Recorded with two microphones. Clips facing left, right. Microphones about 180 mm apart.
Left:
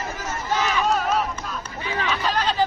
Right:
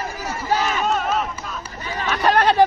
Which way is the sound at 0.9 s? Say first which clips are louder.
Even; centre (ahead or behind).